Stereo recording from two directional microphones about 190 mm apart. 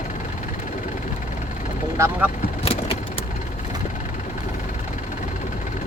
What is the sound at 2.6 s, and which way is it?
Vehicle, 30° left (ahead or behind).